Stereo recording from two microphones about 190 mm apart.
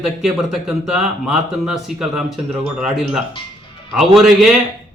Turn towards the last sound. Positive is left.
turn(degrees=-5)  # may be behind; listen again after turning